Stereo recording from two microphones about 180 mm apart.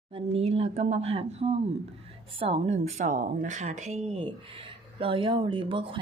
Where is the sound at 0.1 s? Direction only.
35° right (ahead or behind).